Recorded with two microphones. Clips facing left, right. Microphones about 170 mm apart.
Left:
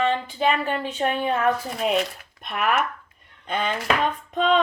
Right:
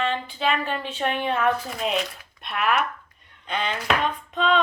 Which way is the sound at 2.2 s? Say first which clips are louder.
Left 1 dB; 45° left (ahead or behind).